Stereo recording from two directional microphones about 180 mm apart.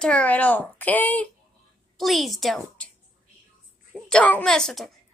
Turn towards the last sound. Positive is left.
turn(degrees=0)  # may be behind; listen again after turning